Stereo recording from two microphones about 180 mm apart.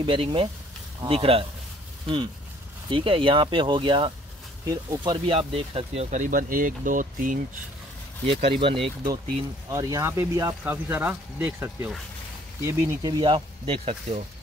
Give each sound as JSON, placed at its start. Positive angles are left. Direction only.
{"t": 0.0, "sound": "speech", "side_deg": -25}
{"t": 2.9, "sound": "speech", "side_deg": -30}
{"t": 8.3, "sound": "speech", "side_deg": -30}